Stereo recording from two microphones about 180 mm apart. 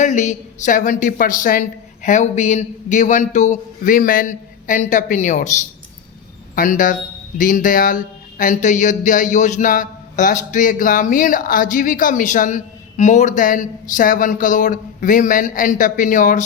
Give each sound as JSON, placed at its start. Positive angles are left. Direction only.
{"t": 0.0, "sound": "speech", "side_deg": 40}
{"t": 6.6, "sound": "speech", "side_deg": 45}